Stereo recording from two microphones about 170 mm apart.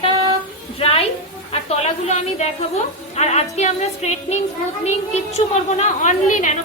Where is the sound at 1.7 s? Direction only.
40° left (ahead or behind).